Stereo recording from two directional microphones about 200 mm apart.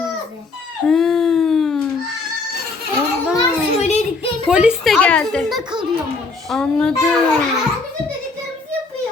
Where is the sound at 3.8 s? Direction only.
35° left (ahead or behind).